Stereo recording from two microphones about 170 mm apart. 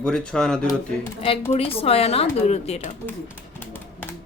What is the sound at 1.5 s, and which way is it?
Speech, 35° left (ahead or behind).